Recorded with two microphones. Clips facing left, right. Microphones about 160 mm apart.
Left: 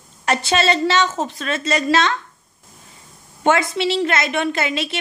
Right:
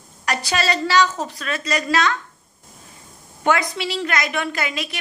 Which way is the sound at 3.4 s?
25° left (ahead or behind).